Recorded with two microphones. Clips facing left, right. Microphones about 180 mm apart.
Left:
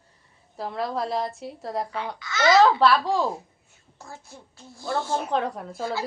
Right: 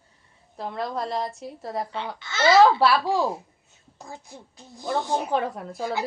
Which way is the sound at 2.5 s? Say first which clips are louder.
Right 1 dB; 10° right (ahead or behind).